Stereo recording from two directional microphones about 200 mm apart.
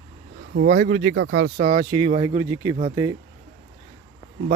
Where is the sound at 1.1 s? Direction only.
65° right (ahead or behind).